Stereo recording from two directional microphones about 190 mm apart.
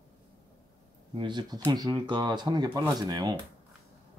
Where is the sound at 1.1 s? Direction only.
25° right (ahead or behind).